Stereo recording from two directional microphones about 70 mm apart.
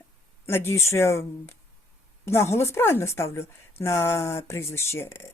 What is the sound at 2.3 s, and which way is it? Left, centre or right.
A woman's voice, left.